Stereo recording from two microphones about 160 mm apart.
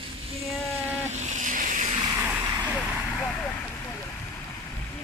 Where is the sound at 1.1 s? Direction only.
45° right (ahead or behind).